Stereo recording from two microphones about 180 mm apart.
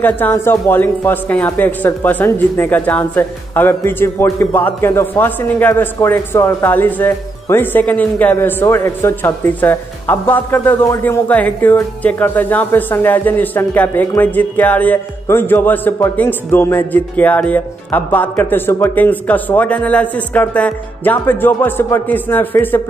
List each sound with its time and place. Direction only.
0.0 s speech: 10° left (ahead or behind)